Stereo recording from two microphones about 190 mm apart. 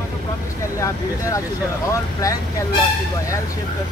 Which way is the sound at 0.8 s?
15° left (ahead or behind).